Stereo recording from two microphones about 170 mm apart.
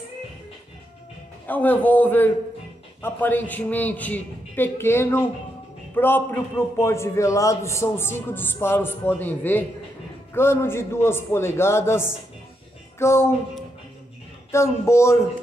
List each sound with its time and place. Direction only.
1.5 s a man's voice: 10° left (ahead or behind)
14.5 s a man's voice: 15° left (ahead or behind)